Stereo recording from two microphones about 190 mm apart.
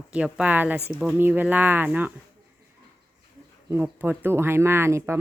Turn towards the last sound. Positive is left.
turn(degrees=-15)  # may be behind; listen again after turning